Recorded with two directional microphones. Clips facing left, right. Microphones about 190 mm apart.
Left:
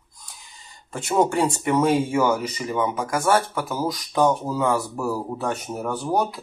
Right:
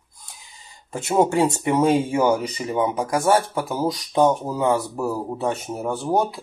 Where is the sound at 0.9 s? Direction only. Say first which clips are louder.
Right 2 dB; 20° right (ahead or behind).